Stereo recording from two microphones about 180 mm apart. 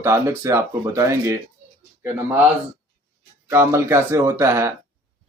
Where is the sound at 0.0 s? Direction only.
15° right (ahead or behind).